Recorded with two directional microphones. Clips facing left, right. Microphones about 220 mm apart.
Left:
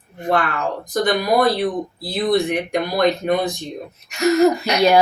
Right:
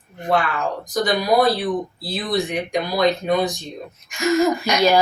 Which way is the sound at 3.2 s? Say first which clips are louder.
Left 1 dB; 55° left (ahead or behind).